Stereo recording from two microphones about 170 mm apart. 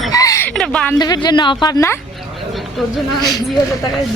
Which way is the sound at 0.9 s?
25° left (ahead or behind).